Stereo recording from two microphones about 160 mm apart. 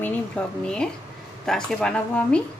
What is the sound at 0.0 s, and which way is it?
A woman's voice, 5° left (ahead or behind).